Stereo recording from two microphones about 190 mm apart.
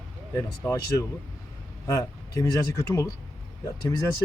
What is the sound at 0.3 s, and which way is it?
Speech, 15° left (ahead or behind).